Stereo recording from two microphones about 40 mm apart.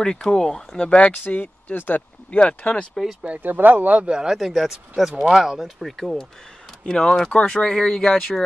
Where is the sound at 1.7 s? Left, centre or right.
Left.